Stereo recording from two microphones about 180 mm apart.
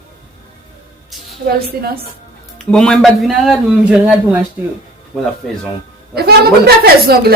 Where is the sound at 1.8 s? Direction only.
55° right (ahead or behind).